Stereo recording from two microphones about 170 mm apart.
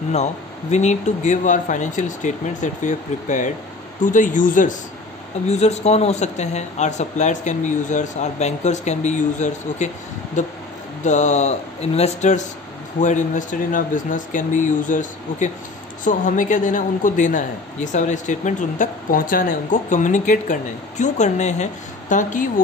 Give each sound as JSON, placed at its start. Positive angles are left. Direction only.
{"t": 0.1, "sound": "a woman's voice", "side_deg": 40}